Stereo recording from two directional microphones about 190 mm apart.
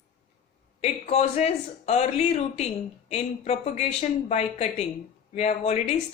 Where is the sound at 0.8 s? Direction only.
35° left (ahead or behind).